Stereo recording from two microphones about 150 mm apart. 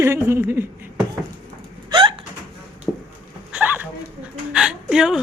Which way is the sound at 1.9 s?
35° right (ahead or behind).